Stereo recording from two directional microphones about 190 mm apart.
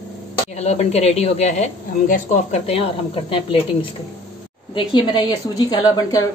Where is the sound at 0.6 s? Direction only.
35° left (ahead or behind).